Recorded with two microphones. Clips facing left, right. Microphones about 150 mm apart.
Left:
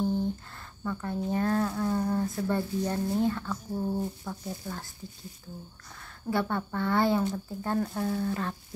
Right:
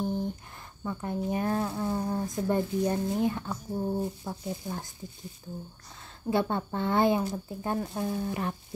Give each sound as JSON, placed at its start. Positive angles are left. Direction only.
{"t": 0.0, "sound": "speech", "side_deg": -15}
{"t": 5.9, "sound": "speech", "side_deg": -20}